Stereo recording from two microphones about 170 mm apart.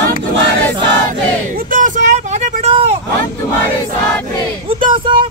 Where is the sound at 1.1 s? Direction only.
55° right (ahead or behind); by 2.9 s 35° right (ahead or behind).